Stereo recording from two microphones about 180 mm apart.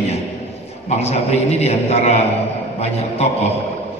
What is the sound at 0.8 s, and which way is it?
A man's voice, 35° left (ahead or behind).